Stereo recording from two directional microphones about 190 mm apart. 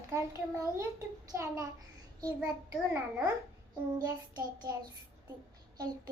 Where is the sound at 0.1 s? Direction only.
15° right (ahead or behind).